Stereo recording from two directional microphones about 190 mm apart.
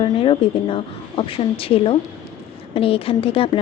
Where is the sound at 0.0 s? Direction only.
25° left (ahead or behind).